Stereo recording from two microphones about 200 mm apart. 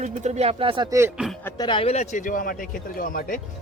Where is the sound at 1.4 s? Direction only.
20° left (ahead or behind); by 3.4 s 45° left (ahead or behind).